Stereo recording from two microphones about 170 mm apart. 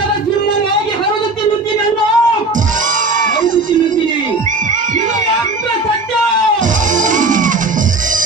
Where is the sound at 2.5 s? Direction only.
50° right (ahead or behind).